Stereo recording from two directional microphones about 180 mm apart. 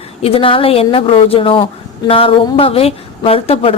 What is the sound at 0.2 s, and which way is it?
Speech, 30° left (ahead or behind).